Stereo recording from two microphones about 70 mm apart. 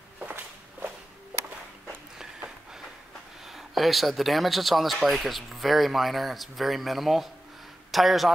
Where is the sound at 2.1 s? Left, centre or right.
Centre.